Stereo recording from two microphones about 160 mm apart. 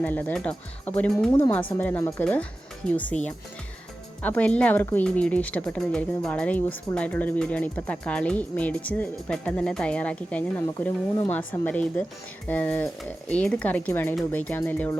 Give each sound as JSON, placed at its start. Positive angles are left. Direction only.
{"t": 0.0, "sound": "a woman's voice", "side_deg": 10}
{"t": 4.2, "sound": "a woman's voice", "side_deg": 10}